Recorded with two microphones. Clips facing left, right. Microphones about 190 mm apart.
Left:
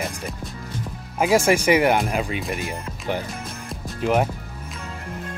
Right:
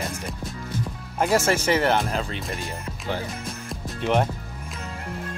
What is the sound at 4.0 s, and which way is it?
Speech, 5° left (ahead or behind).